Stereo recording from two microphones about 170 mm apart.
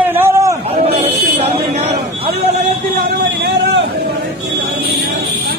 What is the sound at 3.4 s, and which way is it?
Vehicle, 90° right.